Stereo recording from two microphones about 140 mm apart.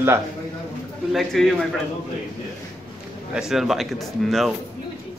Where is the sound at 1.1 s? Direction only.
Centre (ahead or behind).